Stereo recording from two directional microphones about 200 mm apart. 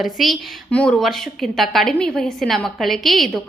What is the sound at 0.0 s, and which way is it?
A woman's voice, centre (ahead or behind).